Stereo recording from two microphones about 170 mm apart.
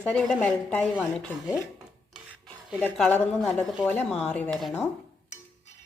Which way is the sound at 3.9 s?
10° left (ahead or behind).